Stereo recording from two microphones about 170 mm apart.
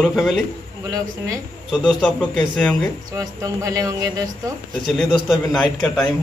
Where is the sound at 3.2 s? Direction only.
20° right (ahead or behind).